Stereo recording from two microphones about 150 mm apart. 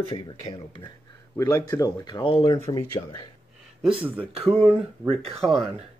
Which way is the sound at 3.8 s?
10° right (ahead or behind).